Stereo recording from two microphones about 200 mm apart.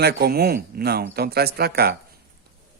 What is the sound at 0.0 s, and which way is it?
Speech, 50° right (ahead or behind).